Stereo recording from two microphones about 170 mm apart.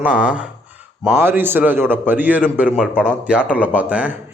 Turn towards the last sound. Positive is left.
turn(degrees=-10)  # may be behind; listen again after turning